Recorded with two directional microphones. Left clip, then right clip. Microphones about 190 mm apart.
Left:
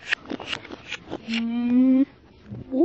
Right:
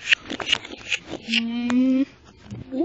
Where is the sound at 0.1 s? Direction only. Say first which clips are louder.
Right 5 dB; 25° right (ahead or behind).